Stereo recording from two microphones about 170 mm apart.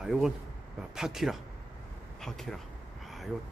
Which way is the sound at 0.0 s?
5° right (ahead or behind).